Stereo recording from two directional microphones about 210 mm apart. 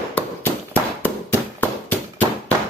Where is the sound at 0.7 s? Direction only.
10° left (ahead or behind).